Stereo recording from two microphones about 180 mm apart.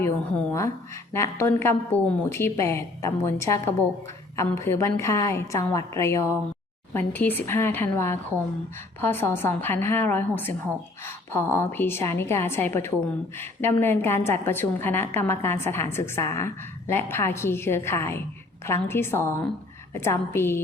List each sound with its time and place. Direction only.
0.0 s a woman's voice: 15° left (ahead or behind)